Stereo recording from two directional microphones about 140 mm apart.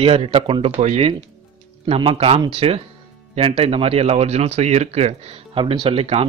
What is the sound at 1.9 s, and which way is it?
Speech, 45° right (ahead or behind).